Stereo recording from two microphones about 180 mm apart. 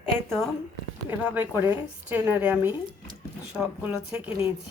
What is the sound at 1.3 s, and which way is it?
A woman's voice, 10° right (ahead or behind).